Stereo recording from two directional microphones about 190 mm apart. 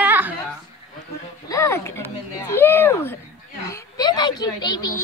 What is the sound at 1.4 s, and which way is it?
A woman's voice, 15° left (ahead or behind).